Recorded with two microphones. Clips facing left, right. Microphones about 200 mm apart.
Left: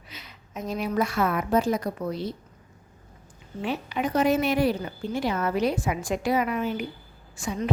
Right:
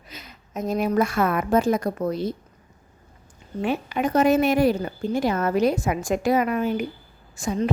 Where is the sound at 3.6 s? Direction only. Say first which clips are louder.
Right 4 dB; 50° right (ahead or behind).